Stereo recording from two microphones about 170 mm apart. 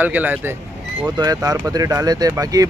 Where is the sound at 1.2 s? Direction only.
20° right (ahead or behind).